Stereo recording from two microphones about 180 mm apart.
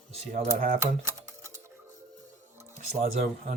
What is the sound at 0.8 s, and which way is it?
Music, 15° right (ahead or behind).